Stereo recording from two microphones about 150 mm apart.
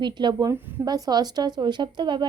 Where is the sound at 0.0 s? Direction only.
30° right (ahead or behind).